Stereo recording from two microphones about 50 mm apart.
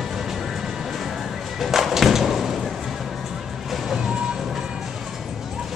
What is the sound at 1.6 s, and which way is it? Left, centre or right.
Thump, centre.